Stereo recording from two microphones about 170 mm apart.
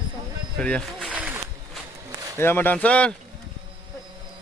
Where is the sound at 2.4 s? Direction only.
10° left (ahead or behind).